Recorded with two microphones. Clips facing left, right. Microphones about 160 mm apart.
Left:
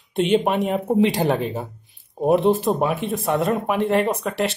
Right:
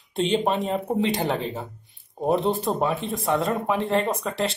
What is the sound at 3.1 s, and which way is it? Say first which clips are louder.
Speech: left 2 dB; 25° left (ahead or behind).